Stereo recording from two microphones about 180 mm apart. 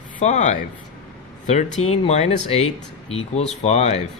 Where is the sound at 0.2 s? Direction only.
40° left (ahead or behind).